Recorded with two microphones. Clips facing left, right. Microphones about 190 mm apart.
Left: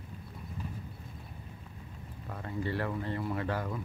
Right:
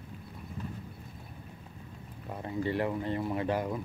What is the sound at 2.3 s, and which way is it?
Speech, 20° right (ahead or behind).